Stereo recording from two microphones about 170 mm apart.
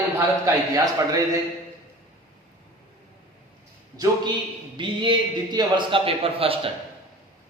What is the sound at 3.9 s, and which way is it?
A man's voice, 20° right (ahead or behind).